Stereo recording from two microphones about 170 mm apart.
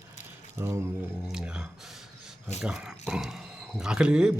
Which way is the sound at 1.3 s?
5° right (ahead or behind).